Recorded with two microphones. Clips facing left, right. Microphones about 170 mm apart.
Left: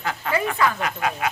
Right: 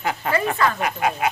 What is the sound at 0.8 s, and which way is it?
Speech, 20° right (ahead or behind).